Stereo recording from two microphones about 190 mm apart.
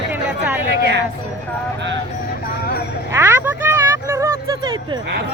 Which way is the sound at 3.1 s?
15° right (ahead or behind).